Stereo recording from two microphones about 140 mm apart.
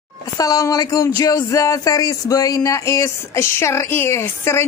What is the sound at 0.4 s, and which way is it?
Speech, 25° left (ahead or behind).